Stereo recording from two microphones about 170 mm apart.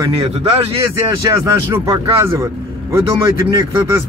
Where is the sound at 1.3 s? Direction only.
15° right (ahead or behind).